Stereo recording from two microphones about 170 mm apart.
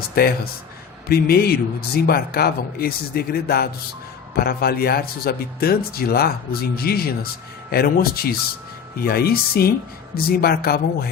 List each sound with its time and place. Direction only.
0.2 s speech: 65° left (ahead or behind)